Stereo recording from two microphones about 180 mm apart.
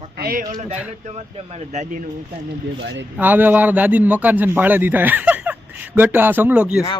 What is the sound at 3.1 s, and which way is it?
A man's voice, 10° right (ahead or behind).